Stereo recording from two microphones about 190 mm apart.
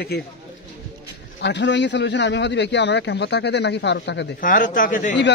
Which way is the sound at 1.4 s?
65° left (ahead or behind).